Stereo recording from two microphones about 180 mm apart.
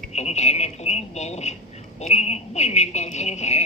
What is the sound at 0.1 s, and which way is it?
Speech, 35° left (ahead or behind).